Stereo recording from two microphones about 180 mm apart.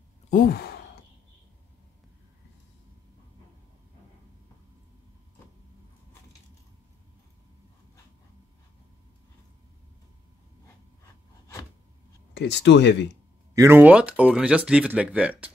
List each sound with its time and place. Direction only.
0.3 s sigh: 55° left (ahead or behind)
12.4 s speech: 75° left (ahead or behind)
13.6 s speech: 10° right (ahead or behind)